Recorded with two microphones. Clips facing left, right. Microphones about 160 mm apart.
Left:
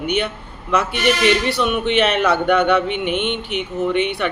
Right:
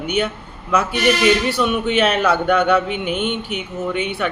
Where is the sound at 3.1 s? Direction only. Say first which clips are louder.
Left 1 dB; 40° right (ahead or behind).